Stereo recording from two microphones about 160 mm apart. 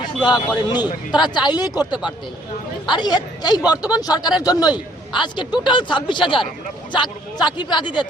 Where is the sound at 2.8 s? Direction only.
25° left (ahead or behind).